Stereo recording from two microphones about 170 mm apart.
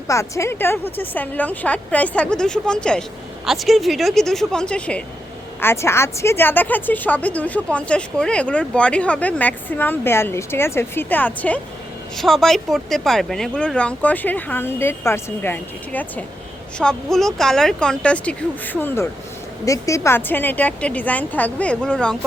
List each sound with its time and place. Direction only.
0.1 s a woman's voice: 15° left (ahead or behind)